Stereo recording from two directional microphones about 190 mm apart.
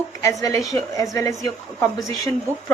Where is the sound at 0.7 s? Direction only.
15° left (ahead or behind).